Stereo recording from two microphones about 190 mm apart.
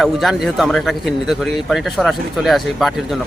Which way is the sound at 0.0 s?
Centre (ahead or behind).